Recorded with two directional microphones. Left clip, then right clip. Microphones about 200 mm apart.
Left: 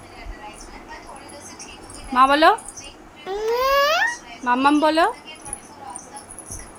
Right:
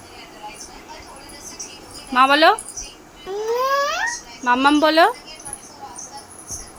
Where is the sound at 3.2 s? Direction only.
20° left (ahead or behind).